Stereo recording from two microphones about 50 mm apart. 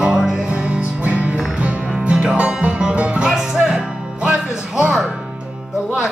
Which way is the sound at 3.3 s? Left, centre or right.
Centre.